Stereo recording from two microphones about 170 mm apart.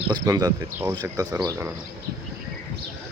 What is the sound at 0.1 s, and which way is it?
Speech, 25° right (ahead or behind).